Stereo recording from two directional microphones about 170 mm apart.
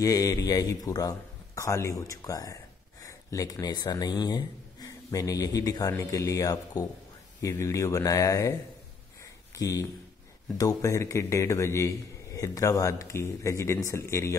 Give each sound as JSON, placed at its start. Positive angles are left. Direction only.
{"t": 0.0, "sound": "a man's voice", "side_deg": 20}
{"t": 9.6, "sound": "a man's voice", "side_deg": 20}